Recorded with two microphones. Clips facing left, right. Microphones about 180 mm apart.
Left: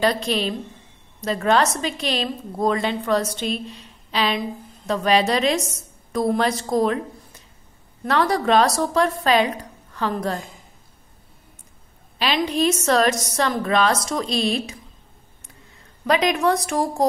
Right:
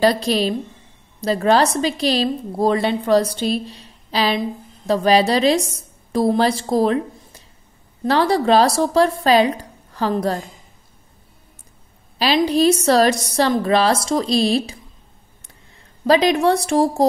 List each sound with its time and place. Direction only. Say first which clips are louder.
0.0 s a woman's voice: right 4 dB; 35° right (ahead or behind)
8.0 s a woman's voice: right 4 dB; 30° right (ahead or behind)
12.2 s a woman's voice: right 5 dB; 35° right (ahead or behind)
16.1 s a woman's voice: right 4 dB; 30° right (ahead or behind)